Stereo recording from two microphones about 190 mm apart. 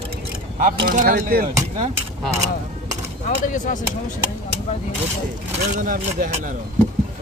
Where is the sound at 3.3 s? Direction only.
40° left (ahead or behind).